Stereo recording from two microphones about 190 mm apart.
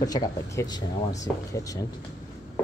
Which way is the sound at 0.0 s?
20° left (ahead or behind).